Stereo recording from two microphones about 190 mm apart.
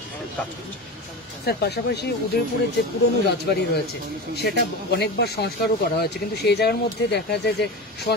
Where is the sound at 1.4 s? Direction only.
55° left (ahead or behind).